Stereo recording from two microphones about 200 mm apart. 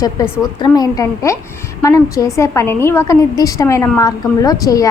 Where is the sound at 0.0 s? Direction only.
20° left (ahead or behind).